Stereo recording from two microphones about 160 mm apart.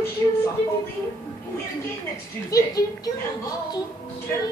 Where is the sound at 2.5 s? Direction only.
20° left (ahead or behind).